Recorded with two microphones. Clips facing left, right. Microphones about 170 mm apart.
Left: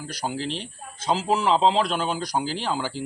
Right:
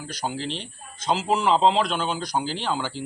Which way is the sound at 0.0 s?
5° left (ahead or behind).